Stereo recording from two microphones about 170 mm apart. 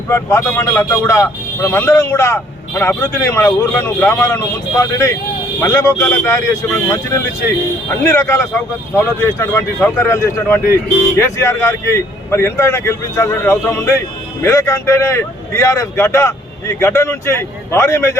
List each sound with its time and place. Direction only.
0.1 s speech: 15° left (ahead or behind)